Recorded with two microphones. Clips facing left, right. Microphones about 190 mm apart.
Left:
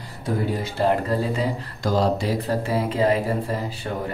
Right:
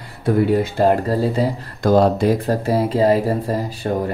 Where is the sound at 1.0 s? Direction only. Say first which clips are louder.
Right 5 dB; 35° right (ahead or behind).